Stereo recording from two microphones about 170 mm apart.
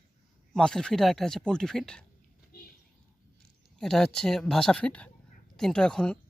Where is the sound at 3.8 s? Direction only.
5° left (ahead or behind).